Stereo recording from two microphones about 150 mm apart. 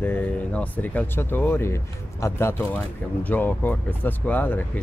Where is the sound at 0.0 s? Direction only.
10° left (ahead or behind).